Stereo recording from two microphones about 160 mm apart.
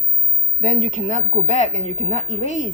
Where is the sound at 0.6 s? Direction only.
50° left (ahead or behind).